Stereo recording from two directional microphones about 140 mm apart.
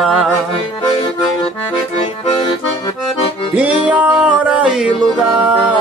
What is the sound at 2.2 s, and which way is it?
Accordion, 40° left (ahead or behind).